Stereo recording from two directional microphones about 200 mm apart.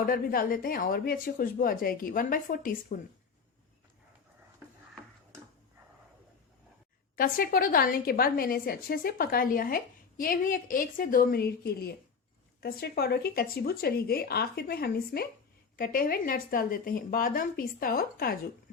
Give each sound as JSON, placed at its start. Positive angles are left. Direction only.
{"t": 0.0, "sound": "a woman's voice", "side_deg": 45}
{"t": 7.2, "sound": "a woman's voice", "side_deg": 45}